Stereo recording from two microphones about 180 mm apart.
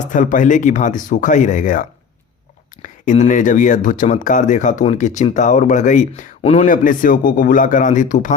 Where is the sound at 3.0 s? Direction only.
45° left (ahead or behind).